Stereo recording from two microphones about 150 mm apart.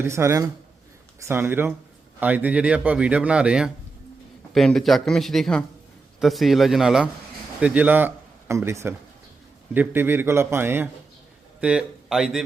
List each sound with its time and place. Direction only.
0.0 s speech: 15° right (ahead or behind)